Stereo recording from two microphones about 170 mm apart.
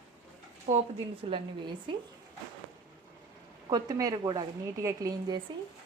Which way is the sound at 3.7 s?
20° right (ahead or behind).